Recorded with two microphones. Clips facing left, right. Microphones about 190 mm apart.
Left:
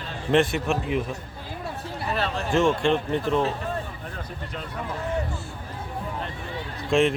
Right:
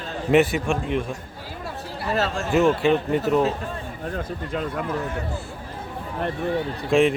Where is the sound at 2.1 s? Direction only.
45° right (ahead or behind).